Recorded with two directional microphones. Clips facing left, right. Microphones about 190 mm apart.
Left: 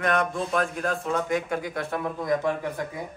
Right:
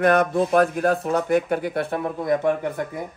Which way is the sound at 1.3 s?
65° right (ahead or behind).